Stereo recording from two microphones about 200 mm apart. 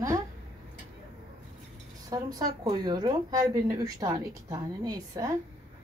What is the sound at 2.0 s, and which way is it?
Speech, 20° right (ahead or behind).